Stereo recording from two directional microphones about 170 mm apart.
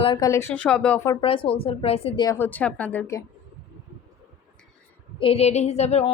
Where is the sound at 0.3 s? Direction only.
15° left (ahead or behind).